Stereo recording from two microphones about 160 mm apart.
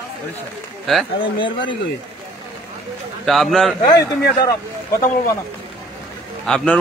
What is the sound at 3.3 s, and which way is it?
Speech, centre (ahead or behind).